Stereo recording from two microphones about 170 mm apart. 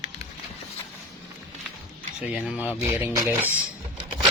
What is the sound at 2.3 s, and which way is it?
Speech, 5° right (ahead or behind).